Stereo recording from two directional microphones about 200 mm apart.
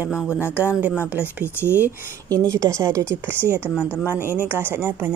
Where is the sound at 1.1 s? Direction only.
10° right (ahead or behind).